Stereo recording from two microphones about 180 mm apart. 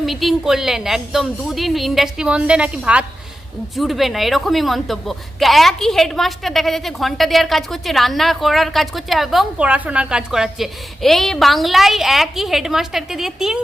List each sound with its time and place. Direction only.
0.0 s a woman's voice: centre (ahead or behind)